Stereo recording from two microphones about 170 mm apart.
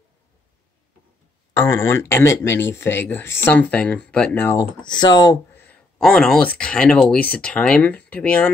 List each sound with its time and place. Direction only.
1.6 s speech: 15° left (ahead or behind)
4.8 s speech: 25° left (ahead or behind)
5.5 s speech: 10° left (ahead or behind)